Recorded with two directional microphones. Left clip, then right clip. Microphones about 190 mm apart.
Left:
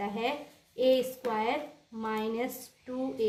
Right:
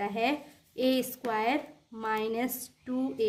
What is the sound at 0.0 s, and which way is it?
Speech, 50° right (ahead or behind).